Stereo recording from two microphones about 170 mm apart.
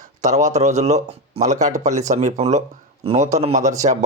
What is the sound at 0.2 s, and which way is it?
Speech, 45° right (ahead or behind).